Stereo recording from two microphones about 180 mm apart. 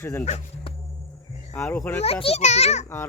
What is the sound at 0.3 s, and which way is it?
Speech, 40° left (ahead or behind).